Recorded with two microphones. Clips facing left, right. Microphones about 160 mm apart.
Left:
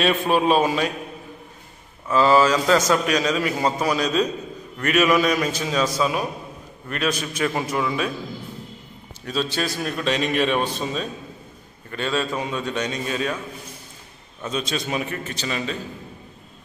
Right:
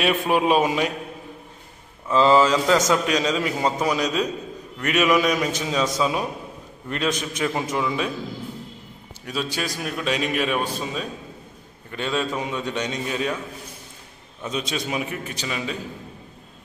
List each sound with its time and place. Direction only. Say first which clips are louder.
0.0 s a man's voice: left 1 dB; 15° right (ahead or behind)
2.0 s a man's voice: even; 20° right (ahead or behind)
9.2 s a man's voice: left 3 dB; 10° right (ahead or behind)
14.4 s a man's voice: left 1 dB; 15° right (ahead or behind)